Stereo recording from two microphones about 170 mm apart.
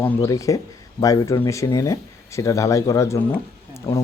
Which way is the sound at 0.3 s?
20° left (ahead or behind).